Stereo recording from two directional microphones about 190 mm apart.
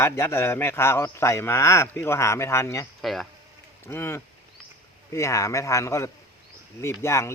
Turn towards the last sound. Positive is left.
turn(degrees=15)  # may be behind; listen again after turning